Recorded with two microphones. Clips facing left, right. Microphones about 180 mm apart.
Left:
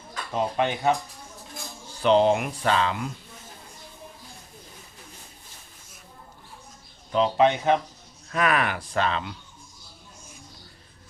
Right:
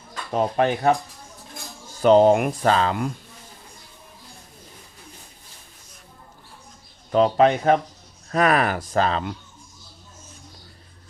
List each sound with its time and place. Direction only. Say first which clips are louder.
0.3 s speech: right 4 dB; 40° right (ahead or behind)
2.0 s speech: right 5 dB; 45° right (ahead or behind)
7.1 s speech: right 4 dB; 45° right (ahead or behind)